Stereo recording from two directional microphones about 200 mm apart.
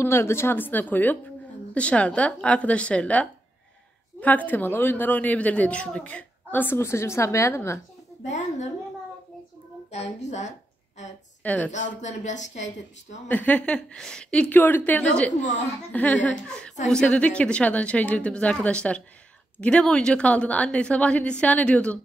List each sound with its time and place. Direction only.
0.0 s a woman's voice: 10° left (ahead or behind)
9.8 s speech: 35° left (ahead or behind)
11.4 s a woman's voice: 5° left (ahead or behind)
11.7 s speech: 35° left (ahead or behind)
13.3 s a woman's voice: 10° left (ahead or behind)